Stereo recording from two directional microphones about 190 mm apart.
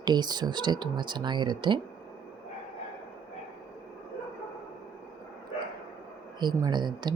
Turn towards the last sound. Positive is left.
turn(degrees=-25)  # may be behind; listen again after turning